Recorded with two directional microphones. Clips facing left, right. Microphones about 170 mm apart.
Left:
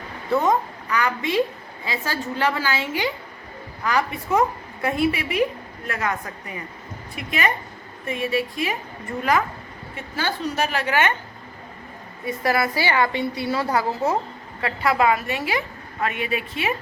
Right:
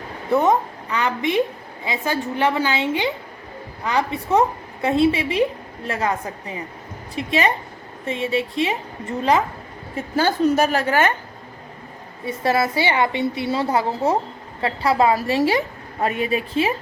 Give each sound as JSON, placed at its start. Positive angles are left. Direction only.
{"t": 0.3, "sound": "a woman's voice", "side_deg": -20}
{"t": 9.9, "sound": "a woman's voice", "side_deg": -45}
{"t": 12.2, "sound": "a woman's voice", "side_deg": -25}